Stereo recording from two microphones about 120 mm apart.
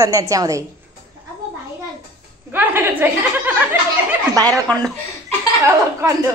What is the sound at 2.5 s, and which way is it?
A woman's voice, 15° right (ahead or behind).